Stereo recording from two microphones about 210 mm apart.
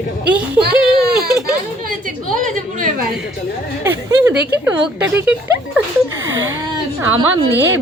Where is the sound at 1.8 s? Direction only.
40° right (ahead or behind).